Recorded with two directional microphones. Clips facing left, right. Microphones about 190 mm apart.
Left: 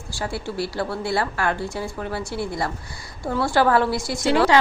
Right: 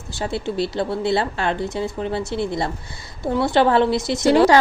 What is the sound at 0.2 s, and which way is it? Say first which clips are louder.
Speech: right 4 dB; 20° right (ahead or behind).